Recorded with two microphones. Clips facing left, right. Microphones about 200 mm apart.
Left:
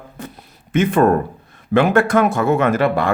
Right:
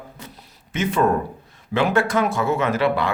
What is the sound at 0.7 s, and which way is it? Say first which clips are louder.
A man's voice: left 6 dB; 55° left (ahead or behind).